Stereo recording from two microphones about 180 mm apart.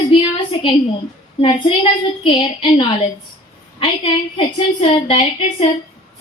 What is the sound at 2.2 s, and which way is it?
Speech, 30° left (ahead or behind).